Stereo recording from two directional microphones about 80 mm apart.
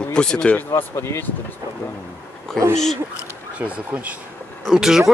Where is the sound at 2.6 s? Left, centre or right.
Centre.